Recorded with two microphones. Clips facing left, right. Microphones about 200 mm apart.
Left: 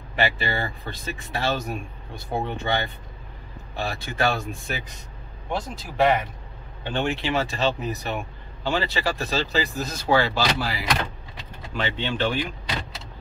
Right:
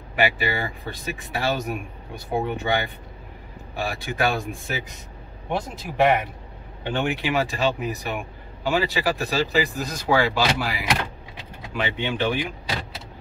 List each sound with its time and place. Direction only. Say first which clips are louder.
0.1 s speech: right 2 dB; 10° right (ahead or behind)